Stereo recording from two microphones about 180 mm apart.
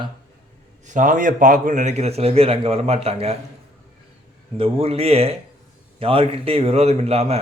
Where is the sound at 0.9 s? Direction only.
45° right (ahead or behind).